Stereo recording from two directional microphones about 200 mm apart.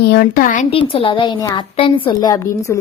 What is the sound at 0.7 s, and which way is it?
A woman's voice, 25° left (ahead or behind).